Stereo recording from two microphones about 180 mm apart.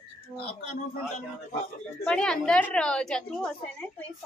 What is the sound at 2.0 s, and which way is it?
A man's voice, 5° left (ahead or behind).